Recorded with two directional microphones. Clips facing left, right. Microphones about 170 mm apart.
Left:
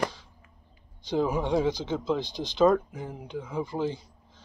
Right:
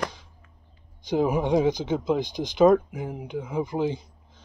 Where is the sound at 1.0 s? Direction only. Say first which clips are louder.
Right 3 dB; 15° right (ahead or behind).